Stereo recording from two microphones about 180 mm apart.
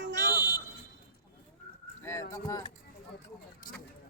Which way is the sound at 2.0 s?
15° left (ahead or behind).